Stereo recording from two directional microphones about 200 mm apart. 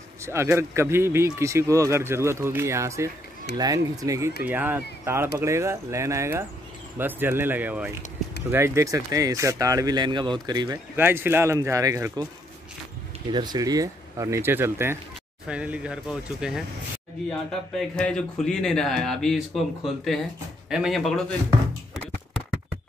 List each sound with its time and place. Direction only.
0.2 s speech: 15° right (ahead or behind)
13.3 s speech: 20° right (ahead or behind); by 21.2 s centre (ahead or behind)